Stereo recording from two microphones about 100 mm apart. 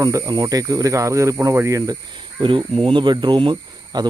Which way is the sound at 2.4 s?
55° right (ahead or behind).